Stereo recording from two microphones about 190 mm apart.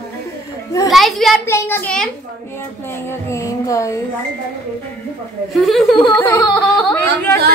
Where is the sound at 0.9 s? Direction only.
Centre (ahead or behind).